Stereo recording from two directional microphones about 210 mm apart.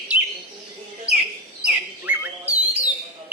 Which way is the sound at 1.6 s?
10° right (ahead or behind).